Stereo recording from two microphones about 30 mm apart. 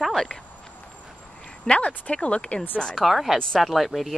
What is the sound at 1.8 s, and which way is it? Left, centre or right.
Speech, left.